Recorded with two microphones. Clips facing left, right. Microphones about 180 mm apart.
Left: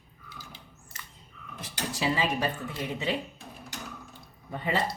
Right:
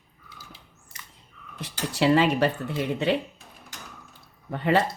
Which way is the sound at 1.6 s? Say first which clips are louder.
Right 7 dB; 70° right (ahead or behind).